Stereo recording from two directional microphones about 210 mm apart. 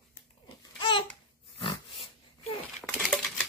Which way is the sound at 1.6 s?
25° left (ahead or behind).